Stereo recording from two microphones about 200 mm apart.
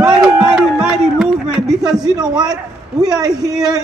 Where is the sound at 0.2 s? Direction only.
Centre (ahead or behind).